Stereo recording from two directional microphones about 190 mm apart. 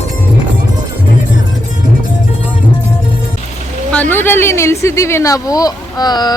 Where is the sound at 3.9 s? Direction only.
10° left (ahead or behind).